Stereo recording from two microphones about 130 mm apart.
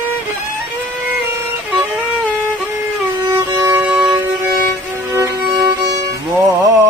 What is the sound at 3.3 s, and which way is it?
Music, 20° right (ahead or behind).